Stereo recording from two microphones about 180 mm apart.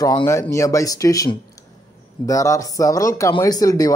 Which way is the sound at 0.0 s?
15° left (ahead or behind).